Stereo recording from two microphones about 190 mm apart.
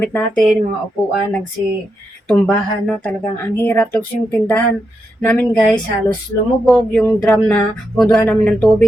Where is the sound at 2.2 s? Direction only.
5° left (ahead or behind).